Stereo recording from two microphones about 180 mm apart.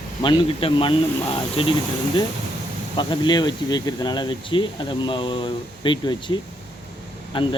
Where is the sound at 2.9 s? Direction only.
25° left (ahead or behind).